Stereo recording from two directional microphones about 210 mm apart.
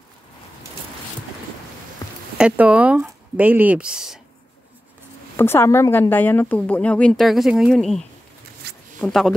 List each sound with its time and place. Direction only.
2.0 s a sound: 15° left (ahead or behind)
2.3 s speech: 5° right (ahead or behind)
5.4 s speech: 10° left (ahead or behind)
8.6 s zipper: 50° right (ahead or behind)
9.0 s speech: centre (ahead or behind)